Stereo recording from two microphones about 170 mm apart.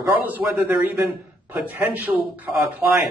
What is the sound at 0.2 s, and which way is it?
Speech, 10° right (ahead or behind).